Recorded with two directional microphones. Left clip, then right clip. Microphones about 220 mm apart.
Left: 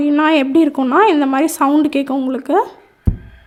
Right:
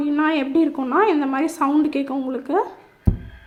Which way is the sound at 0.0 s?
50° left (ahead or behind).